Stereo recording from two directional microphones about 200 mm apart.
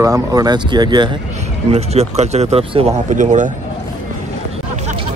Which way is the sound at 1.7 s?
30° right (ahead or behind).